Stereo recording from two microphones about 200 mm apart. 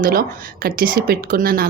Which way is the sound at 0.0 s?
45° right (ahead or behind).